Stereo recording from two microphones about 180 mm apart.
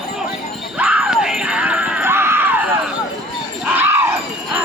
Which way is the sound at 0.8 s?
5° right (ahead or behind).